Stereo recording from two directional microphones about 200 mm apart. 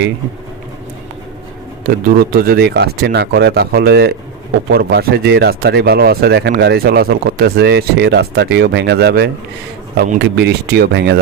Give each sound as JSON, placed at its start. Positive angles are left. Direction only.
{"t": 2.0, "sound": "speech", "side_deg": -45}